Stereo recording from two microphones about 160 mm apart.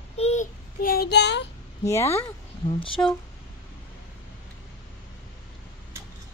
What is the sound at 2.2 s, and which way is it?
Speech, 30° left (ahead or behind).